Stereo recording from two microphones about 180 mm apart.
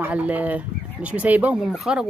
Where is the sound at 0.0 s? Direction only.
10° right (ahead or behind).